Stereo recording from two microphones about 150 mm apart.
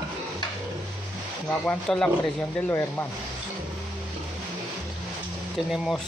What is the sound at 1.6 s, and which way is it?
Speech, 5° left (ahead or behind).